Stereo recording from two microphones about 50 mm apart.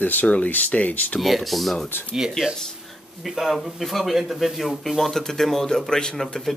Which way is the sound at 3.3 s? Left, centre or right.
Centre.